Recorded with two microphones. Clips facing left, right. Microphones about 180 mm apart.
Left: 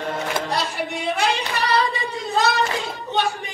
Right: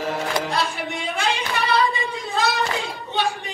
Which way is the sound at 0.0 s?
5° right (ahead or behind).